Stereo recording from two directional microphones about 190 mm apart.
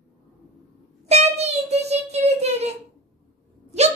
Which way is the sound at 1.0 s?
35° right (ahead or behind).